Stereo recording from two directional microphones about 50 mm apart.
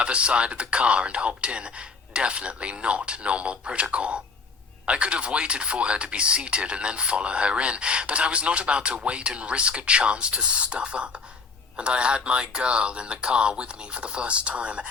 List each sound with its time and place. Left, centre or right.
0.0 s speech: right